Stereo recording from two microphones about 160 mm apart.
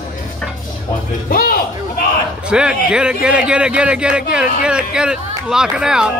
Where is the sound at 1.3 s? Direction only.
70° left (ahead or behind).